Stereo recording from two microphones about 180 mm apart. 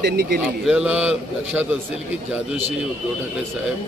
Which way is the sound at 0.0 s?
60° right (ahead or behind).